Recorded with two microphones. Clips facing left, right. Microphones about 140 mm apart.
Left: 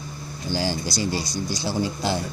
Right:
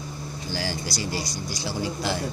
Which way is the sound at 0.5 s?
25° left (ahead or behind).